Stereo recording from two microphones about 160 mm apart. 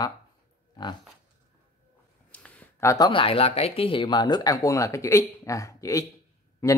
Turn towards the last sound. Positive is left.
turn(degrees=15)  # may be behind; listen again after turning